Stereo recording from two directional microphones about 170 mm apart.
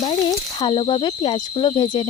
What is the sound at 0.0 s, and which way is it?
Speech, 25° left (ahead or behind).